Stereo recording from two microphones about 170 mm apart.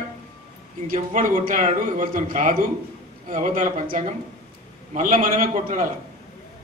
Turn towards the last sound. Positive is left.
turn(degrees=-50)  # may be behind; listen again after turning